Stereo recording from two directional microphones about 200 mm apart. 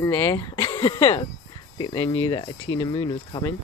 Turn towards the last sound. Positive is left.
turn(degrees=25)  # may be behind; listen again after turning